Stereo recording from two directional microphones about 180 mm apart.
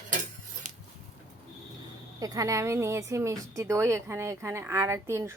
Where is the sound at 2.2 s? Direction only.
20° right (ahead or behind).